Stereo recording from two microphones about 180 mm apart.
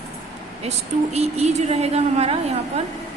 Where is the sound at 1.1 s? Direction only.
35° right (ahead or behind).